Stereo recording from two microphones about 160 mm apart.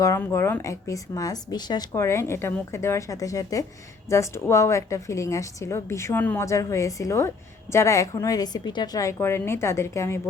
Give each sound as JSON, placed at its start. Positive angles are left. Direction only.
{"t": 0.0, "sound": "a woman's voice", "side_deg": 15}